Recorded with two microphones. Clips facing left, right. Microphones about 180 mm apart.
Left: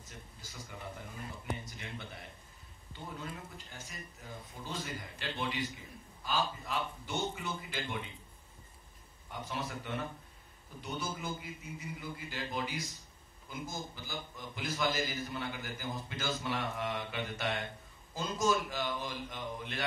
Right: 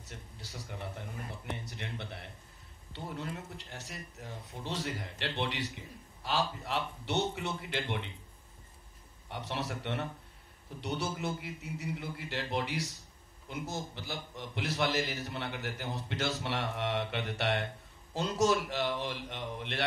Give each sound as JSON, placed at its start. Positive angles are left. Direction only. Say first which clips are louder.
{"t": 0.0, "sound": "a sound", "louder": "right 3 dB", "side_deg": -70}
{"t": 2.9, "sound": "a man's voice", "louder": "right 4 dB", "side_deg": -75}
{"t": 9.3, "sound": "a man's voice", "louder": "right 2 dB", "side_deg": -75}